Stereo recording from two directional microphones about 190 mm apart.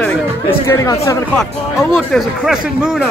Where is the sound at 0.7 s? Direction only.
15° left (ahead or behind).